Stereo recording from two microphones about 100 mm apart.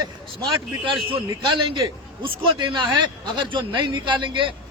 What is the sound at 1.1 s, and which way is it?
A man's voice, 55° right (ahead or behind).